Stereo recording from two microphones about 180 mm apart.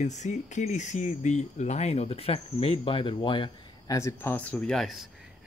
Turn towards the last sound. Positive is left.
turn(degrees=0)  # may be behind; listen again after turning